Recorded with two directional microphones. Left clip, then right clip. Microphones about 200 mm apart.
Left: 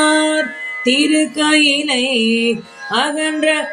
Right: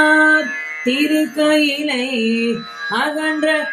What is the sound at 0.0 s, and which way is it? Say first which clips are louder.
Music: right 2 dB; 20° left (ahead or behind).